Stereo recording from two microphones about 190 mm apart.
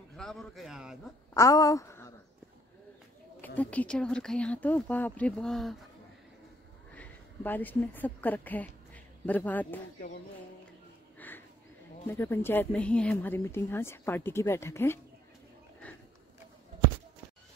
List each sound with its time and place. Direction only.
0.1 s a man's voice: centre (ahead or behind)
1.3 s a woman's voice: 20° left (ahead or behind)
3.3 s a woman's voice: 10° left (ahead or behind)
6.9 s a woman's voice: 10° left (ahead or behind)
11.1 s a sound: 10° left (ahead or behind)
12.1 s a woman's voice: 10° left (ahead or behind)